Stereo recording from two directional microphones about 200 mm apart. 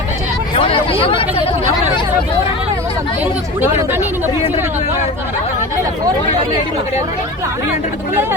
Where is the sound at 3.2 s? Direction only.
10° right (ahead or behind).